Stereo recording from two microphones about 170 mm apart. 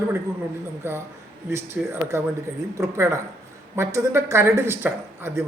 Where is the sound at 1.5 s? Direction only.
15° right (ahead or behind).